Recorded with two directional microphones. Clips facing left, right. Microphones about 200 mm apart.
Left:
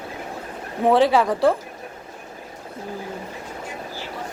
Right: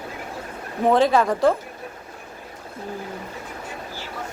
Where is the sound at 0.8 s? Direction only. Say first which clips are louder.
Left 1 dB; 15° left (ahead or behind).